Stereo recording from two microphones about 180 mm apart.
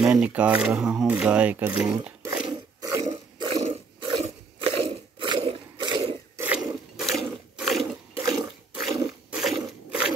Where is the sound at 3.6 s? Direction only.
30° right (ahead or behind).